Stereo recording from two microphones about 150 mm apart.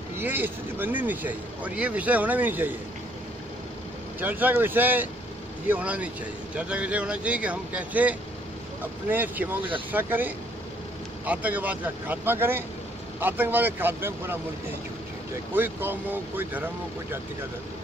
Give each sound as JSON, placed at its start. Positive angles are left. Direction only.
{"t": 0.2, "sound": "speech", "side_deg": -15}
{"t": 4.2, "sound": "speech", "side_deg": -10}
{"t": 15.5, "sound": "speech", "side_deg": -15}